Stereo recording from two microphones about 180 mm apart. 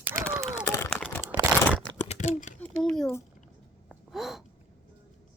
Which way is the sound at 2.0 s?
40° left (ahead or behind).